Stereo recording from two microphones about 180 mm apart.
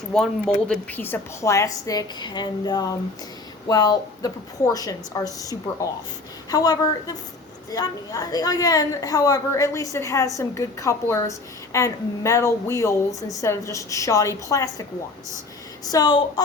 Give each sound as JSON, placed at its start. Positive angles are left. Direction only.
{"t": 0.1, "sound": "a woman's voice", "side_deg": 5}